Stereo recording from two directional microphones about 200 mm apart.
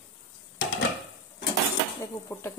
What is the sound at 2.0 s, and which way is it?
Dishes, 15° left (ahead or behind).